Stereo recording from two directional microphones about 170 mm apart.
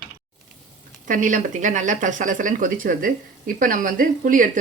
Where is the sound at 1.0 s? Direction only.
50° right (ahead or behind).